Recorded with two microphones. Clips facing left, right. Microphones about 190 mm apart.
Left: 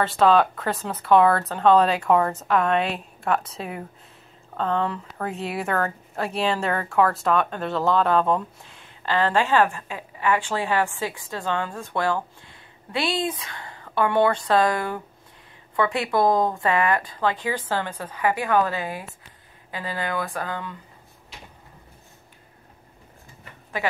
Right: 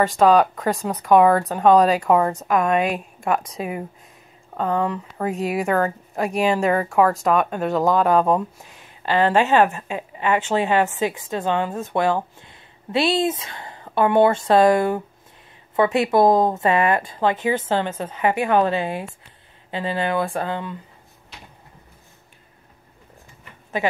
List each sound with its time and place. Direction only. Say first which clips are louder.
0.2 s a woman's voice: right 2 dB; 10° right (ahead or behind)
23.8 s speech: right 4 dB; 20° right (ahead or behind)